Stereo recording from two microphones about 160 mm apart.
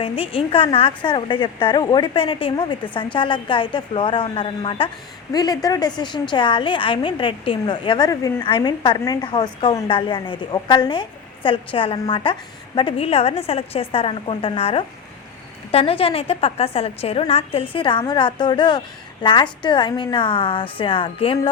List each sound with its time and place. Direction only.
0.0 s a woman's voice: 35° left (ahead or behind)